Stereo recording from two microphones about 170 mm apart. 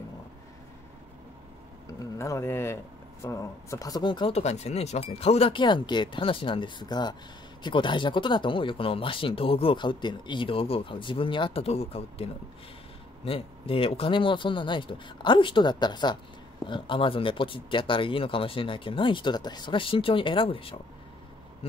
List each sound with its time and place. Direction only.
1.9 s speech: 20° left (ahead or behind)